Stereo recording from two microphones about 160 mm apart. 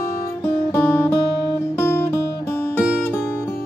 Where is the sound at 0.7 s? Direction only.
10° left (ahead or behind).